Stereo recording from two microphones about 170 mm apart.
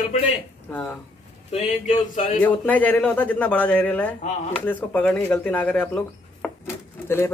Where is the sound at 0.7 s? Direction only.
10° left (ahead or behind).